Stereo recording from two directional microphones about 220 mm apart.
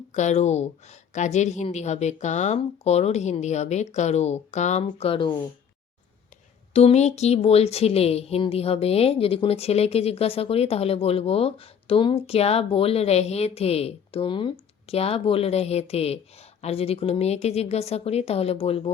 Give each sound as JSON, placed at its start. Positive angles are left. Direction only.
{"t": 0.1, "sound": "a woman's voice", "side_deg": 30}
{"t": 6.7, "sound": "speech", "side_deg": 30}